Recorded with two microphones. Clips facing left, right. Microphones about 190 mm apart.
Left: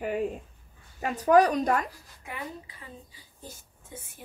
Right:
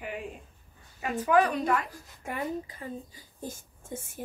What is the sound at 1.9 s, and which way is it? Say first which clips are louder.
Speech: right 5 dB; 45° right (ahead or behind).